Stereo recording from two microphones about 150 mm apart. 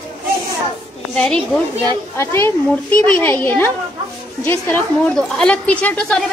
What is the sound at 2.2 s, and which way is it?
Speech, 15° left (ahead or behind).